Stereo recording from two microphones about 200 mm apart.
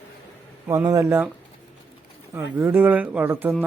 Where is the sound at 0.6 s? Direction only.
15° right (ahead or behind).